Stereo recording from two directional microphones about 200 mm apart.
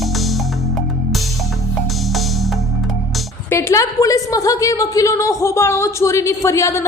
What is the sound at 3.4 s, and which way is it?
A woman's voice, 15° left (ahead or behind).